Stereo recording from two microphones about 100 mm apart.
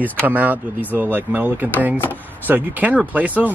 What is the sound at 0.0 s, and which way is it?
Speech, 15° right (ahead or behind).